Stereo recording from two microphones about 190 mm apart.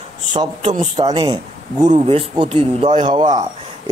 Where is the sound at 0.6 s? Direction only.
30° right (ahead or behind).